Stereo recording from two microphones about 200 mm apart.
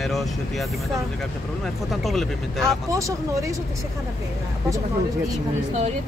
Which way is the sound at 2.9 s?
15° right (ahead or behind).